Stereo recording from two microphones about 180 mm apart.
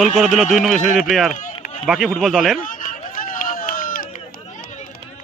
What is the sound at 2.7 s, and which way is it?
Run, 50° left (ahead or behind).